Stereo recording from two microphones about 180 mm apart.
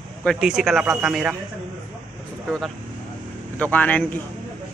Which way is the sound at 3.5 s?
10° left (ahead or behind).